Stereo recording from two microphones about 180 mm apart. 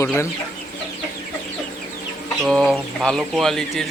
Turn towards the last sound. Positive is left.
turn(degrees=0)  # may be behind; listen again after turning